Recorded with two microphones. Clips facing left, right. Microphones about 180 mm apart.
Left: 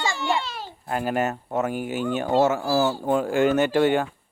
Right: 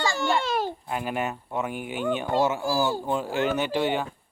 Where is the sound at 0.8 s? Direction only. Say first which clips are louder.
Left 4 dB; 45° left (ahead or behind).